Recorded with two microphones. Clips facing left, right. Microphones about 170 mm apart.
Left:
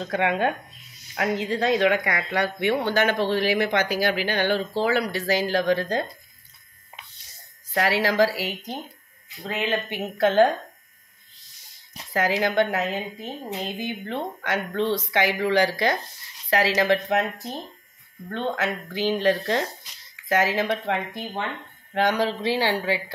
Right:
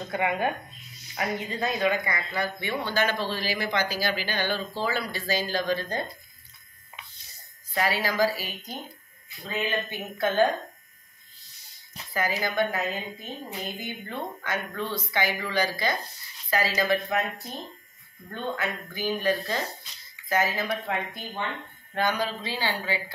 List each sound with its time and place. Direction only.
0.0 s speech: 90° left; by 6.0 s 75° left (ahead or behind)
7.7 s speech: 75° left (ahead or behind)
12.1 s speech: 80° left